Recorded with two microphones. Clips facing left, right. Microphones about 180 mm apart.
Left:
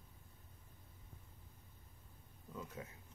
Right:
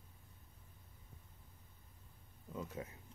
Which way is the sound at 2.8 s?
30° right (ahead or behind).